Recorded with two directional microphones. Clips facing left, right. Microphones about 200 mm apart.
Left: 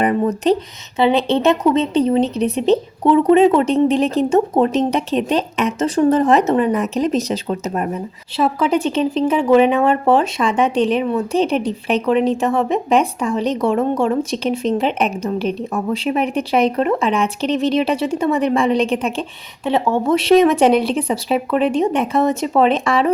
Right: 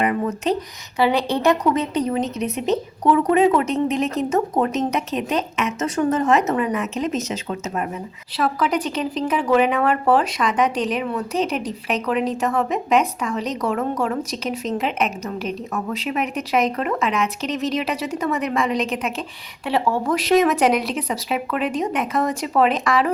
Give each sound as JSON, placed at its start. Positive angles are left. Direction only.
{"t": 0.0, "sound": "speech", "side_deg": 35}
{"t": 0.9, "sound": "speech", "side_deg": 25}